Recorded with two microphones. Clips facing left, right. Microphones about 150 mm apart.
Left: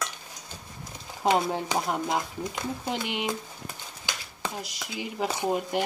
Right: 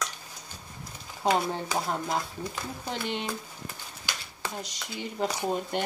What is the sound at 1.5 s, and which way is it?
Speech, 15° left (ahead or behind).